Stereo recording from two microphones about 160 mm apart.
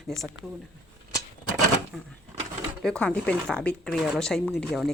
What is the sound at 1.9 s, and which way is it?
Speech, centre (ahead or behind).